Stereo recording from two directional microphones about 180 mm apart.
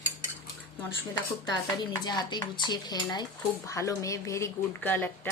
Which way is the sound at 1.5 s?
25° left (ahead or behind).